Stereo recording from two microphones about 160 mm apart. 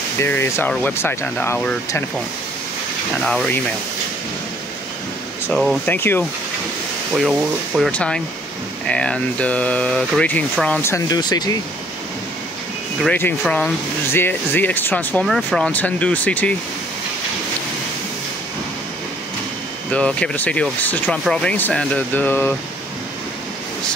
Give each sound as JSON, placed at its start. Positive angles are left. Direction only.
{"t": 0.2, "sound": "speech", "side_deg": 15}
{"t": 3.3, "sound": "speech", "side_deg": 5}
{"t": 5.5, "sound": "speech", "side_deg": 0}
{"t": 5.9, "sound": "speech", "side_deg": 15}
{"t": 7.2, "sound": "speech", "side_deg": -5}
{"t": 7.9, "sound": "speech", "side_deg": 5}
{"t": 10.8, "sound": "speech", "side_deg": 20}
{"t": 13.0, "sound": "speech", "side_deg": 5}
{"t": 19.9, "sound": "speech", "side_deg": 5}